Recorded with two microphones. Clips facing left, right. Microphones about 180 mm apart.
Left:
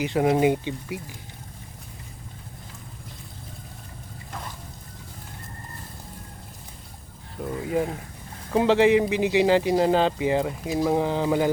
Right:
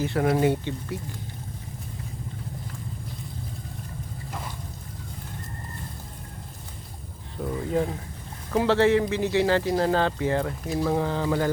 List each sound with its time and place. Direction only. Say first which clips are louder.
0.0 s speech: left 2 dB; 15° left (ahead or behind)
7.4 s speech: even; 5° left (ahead or behind)